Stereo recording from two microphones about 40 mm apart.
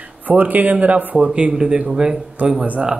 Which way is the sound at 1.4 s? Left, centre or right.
Right.